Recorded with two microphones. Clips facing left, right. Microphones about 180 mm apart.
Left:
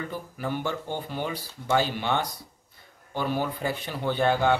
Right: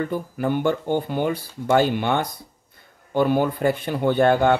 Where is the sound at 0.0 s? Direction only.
55° right (ahead or behind).